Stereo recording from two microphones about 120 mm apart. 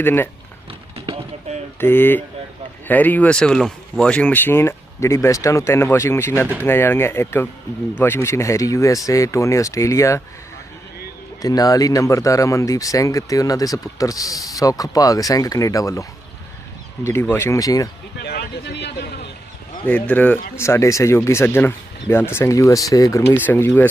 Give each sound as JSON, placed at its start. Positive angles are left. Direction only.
{"t": 0.0, "sound": "speech", "side_deg": 20}
{"t": 0.7, "sound": "a sound", "side_deg": -50}
{"t": 1.8, "sound": "speech", "side_deg": 20}
{"t": 11.4, "sound": "speech", "side_deg": 30}
{"t": 19.8, "sound": "speech", "side_deg": 15}